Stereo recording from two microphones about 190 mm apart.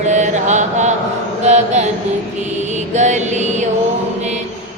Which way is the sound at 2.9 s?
40° right (ahead or behind).